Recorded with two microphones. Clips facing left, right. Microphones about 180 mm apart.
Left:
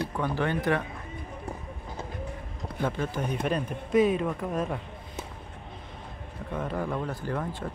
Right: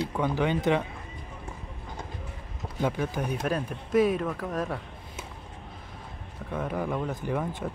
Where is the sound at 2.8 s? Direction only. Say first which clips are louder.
Right 1 dB; 10° right (ahead or behind).